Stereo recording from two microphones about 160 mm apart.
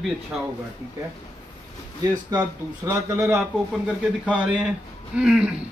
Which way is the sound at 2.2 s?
25° right (ahead or behind).